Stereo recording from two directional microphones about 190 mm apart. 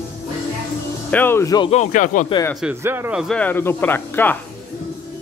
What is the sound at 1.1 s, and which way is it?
Speech, 10° left (ahead or behind).